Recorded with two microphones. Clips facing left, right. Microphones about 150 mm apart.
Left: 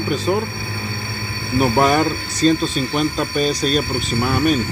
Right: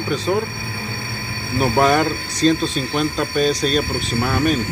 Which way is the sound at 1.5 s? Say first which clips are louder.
Left 1 dB; 5° left (ahead or behind).